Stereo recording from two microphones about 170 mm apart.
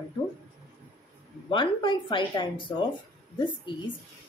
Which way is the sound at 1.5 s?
30° left (ahead or behind).